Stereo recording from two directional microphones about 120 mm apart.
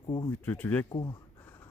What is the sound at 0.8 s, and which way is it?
Speech, 40° left (ahead or behind).